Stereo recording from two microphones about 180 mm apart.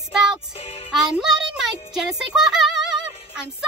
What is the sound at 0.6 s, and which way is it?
Music, 30° left (ahead or behind).